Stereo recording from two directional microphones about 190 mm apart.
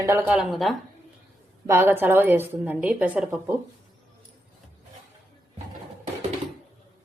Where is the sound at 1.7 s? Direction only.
10° right (ahead or behind).